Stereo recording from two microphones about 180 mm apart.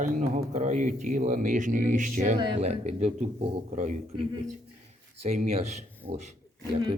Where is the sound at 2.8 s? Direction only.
40° right (ahead or behind).